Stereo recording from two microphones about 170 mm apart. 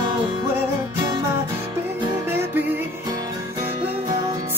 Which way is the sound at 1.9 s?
15° right (ahead or behind).